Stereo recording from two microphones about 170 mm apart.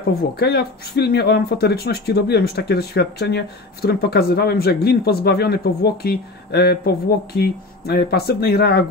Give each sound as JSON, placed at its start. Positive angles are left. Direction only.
{"t": 0.4, "sound": "speech", "side_deg": 70}